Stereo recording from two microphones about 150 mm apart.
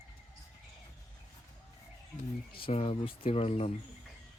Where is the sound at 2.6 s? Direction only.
40° left (ahead or behind).